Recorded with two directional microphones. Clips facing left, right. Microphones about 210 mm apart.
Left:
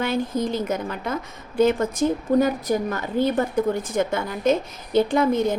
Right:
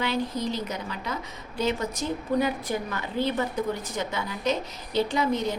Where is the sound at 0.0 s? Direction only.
50° left (ahead or behind).